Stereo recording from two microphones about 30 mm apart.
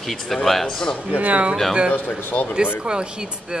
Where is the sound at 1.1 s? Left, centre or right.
Right.